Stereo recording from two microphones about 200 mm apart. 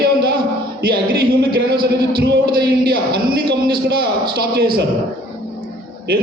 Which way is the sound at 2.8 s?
50° right (ahead or behind).